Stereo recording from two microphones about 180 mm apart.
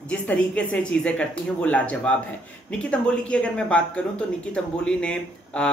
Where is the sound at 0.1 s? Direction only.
5° left (ahead or behind).